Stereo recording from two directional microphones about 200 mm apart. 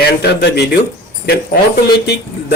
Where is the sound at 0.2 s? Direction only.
55° left (ahead or behind).